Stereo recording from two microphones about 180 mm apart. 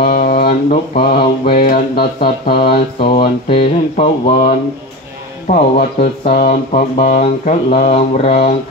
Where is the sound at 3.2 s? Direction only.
35° left (ahead or behind).